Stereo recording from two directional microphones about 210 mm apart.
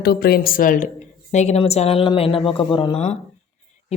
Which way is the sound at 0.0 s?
50° left (ahead or behind).